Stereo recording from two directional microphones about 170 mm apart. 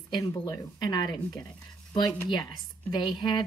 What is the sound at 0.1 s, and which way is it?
Speech, 20° left (ahead or behind).